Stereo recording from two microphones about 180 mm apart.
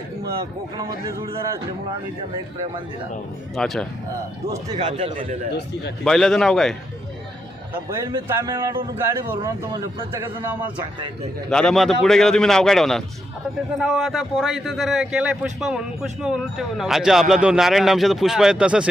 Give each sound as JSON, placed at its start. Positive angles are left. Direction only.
{"t": 0.8, "sound": "a man's voice", "side_deg": -25}
{"t": 3.5, "sound": "a man's voice", "side_deg": 0}
{"t": 4.7, "sound": "speech", "side_deg": -40}
{"t": 6.1, "sound": "a man's voice", "side_deg": 0}
{"t": 8.3, "sound": "a man's voice", "side_deg": -15}
{"t": 11.5, "sound": "a man's voice", "side_deg": 5}